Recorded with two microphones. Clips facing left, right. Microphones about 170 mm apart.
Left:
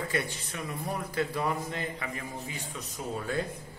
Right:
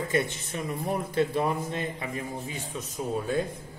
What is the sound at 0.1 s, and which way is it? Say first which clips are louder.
A man's voice: right 5 dB; 20° right (ahead or behind).